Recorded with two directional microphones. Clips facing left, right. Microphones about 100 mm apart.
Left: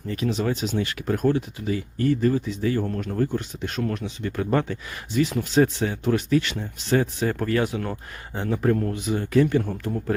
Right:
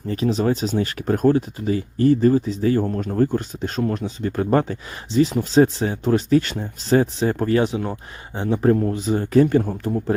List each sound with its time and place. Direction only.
0.1 s speech: 35° right (ahead or behind)